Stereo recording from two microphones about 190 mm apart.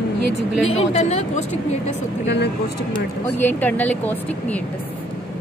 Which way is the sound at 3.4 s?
10° left (ahead or behind).